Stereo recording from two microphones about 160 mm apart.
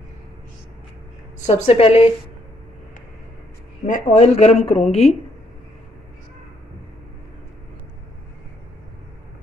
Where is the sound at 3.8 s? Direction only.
50° left (ahead or behind).